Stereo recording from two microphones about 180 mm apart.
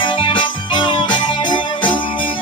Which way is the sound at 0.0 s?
25° left (ahead or behind).